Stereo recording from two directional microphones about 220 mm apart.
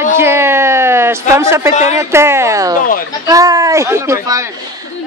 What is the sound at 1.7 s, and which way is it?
Speech, 30° left (ahead or behind).